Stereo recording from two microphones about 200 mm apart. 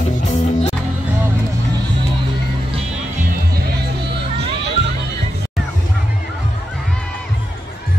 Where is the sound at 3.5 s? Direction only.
50° right (ahead or behind).